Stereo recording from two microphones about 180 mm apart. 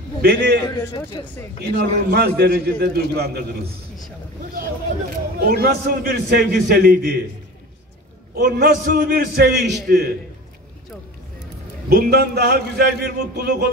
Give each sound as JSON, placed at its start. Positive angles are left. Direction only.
{"t": 0.2, "sound": "a man's voice", "side_deg": -60}
{"t": 0.7, "sound": "speech", "side_deg": 25}
{"t": 1.8, "sound": "a man's voice", "side_deg": -60}
{"t": 5.4, "sound": "a man's voice", "side_deg": -55}
{"t": 8.4, "sound": "a man's voice", "side_deg": -60}
{"t": 11.9, "sound": "a man's voice", "side_deg": -60}